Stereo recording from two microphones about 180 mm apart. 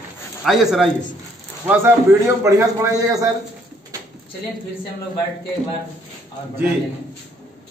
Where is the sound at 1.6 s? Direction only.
15° right (ahead or behind).